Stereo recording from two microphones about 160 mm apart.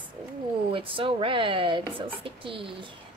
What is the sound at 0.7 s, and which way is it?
Speech, 35° right (ahead or behind).